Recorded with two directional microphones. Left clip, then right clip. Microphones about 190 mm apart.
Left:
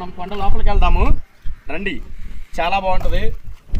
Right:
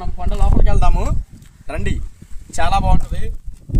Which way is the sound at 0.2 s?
Centre (ahead or behind).